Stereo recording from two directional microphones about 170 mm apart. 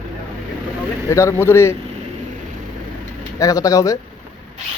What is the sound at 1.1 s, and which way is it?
Speech, 15° left (ahead or behind).